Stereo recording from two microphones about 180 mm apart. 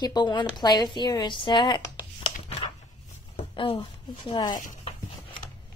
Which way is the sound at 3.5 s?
30° left (ahead or behind).